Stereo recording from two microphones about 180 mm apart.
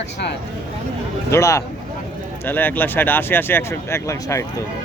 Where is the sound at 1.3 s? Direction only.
15° left (ahead or behind).